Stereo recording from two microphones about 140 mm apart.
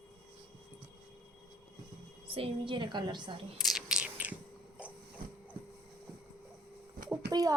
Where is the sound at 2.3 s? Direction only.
40° right (ahead or behind).